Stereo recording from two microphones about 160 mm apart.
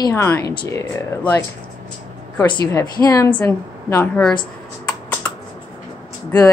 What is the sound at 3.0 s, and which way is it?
A woman's voice, 20° left (ahead or behind).